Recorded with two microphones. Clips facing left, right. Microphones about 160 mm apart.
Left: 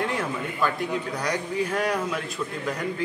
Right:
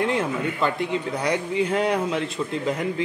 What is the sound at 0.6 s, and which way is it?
A man's voice, 25° right (ahead or behind).